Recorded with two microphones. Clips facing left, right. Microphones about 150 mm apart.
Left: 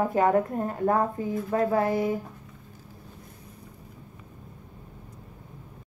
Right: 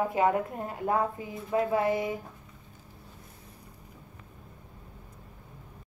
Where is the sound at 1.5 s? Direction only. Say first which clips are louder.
Left 1 dB; 40° left (ahead or behind).